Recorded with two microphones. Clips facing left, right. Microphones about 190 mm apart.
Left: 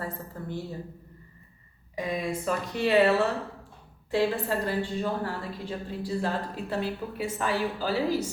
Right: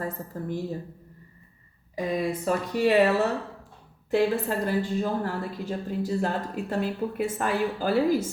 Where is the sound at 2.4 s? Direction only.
40° right (ahead or behind).